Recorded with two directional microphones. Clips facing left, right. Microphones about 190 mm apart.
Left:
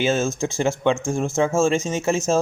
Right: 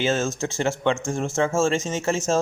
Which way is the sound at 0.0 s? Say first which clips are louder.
Left 2 dB; 10° left (ahead or behind).